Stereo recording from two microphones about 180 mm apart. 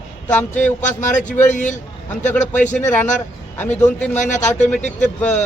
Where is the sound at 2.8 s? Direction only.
10° left (ahead or behind).